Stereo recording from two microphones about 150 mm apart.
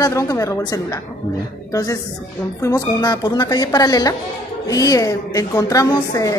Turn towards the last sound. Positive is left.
turn(degrees=25)  # may be behind; listen again after turning